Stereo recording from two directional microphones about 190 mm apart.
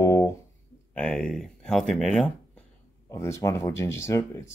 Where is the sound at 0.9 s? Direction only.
5° left (ahead or behind).